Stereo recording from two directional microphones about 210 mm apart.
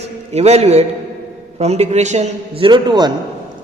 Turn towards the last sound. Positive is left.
turn(degrees=-20)  # may be behind; listen again after turning